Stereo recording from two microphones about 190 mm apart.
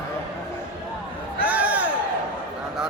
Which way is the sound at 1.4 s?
5° right (ahead or behind).